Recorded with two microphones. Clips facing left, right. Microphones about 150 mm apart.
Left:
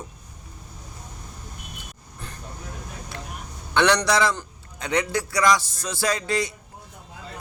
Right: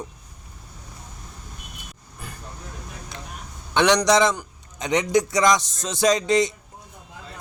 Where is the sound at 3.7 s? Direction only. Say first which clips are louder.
Right 2 dB; 15° right (ahead or behind).